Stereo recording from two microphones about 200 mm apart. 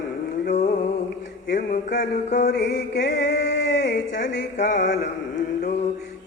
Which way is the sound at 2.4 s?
55° left (ahead or behind).